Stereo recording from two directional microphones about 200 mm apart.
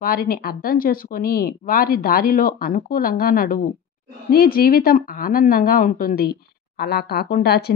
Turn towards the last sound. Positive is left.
turn(degrees=55)  # may be behind; listen again after turning